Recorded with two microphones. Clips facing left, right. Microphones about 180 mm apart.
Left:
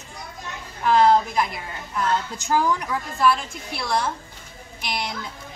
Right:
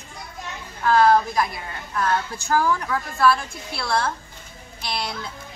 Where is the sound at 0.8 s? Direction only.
20° left (ahead or behind).